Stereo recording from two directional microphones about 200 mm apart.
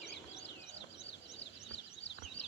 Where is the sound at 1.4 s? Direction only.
60° left (ahead or behind).